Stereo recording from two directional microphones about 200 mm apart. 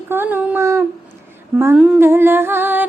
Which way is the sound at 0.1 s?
10° right (ahead or behind).